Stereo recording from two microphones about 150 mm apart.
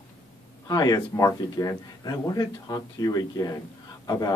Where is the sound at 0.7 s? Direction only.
25° left (ahead or behind).